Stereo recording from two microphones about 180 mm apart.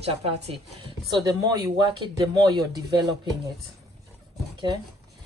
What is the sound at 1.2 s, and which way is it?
Speech, 20° right (ahead or behind).